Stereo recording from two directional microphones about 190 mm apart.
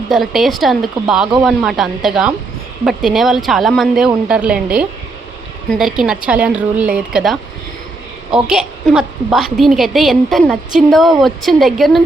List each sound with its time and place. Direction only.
0.1 s a woman's voice: centre (ahead or behind)